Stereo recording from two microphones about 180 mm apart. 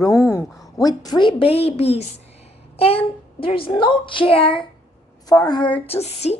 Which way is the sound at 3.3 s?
30° left (ahead or behind).